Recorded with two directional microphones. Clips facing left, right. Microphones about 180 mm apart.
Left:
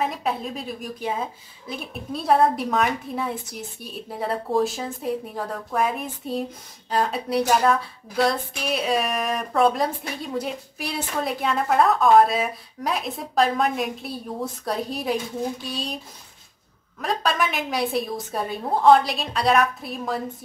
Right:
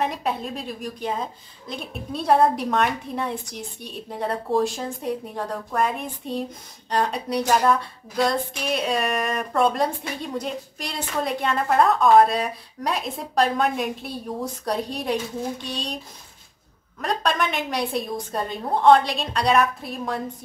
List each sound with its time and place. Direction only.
0.0 s a woman's voice: centre (ahead or behind)
17.0 s a woman's voice: centre (ahead or behind)